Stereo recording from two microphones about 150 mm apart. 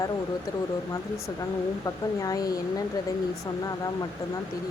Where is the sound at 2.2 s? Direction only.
25° left (ahead or behind).